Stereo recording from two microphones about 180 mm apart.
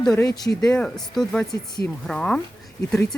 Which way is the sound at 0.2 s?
20° left (ahead or behind).